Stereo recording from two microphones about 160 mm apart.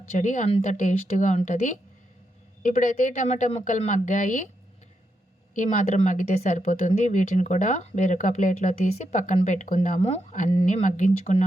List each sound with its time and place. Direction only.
0.2 s speech: 50° left (ahead or behind)
5.5 s speech: 50° left (ahead or behind)